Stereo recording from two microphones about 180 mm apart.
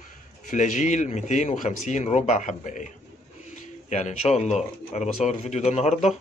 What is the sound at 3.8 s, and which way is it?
Speech, 40° left (ahead or behind).